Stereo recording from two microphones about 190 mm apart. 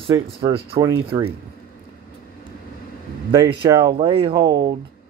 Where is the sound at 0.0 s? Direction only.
25° right (ahead or behind).